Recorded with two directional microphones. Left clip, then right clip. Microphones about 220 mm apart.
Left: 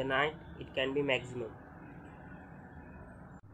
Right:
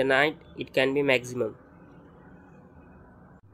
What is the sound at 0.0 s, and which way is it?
Speech, 45° right (ahead or behind).